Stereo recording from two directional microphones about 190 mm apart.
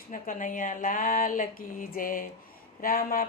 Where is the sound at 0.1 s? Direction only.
45° left (ahead or behind).